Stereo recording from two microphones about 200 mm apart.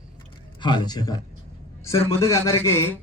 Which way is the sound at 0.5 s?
20° left (ahead or behind).